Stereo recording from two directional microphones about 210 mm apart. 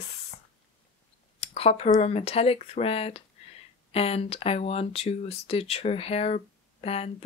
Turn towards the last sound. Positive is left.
turn(degrees=30)  # may be behind; listen again after turning